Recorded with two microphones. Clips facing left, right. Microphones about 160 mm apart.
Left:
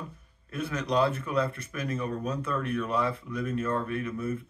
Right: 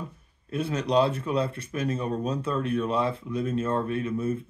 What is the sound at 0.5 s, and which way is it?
Speech, 30° right (ahead or behind).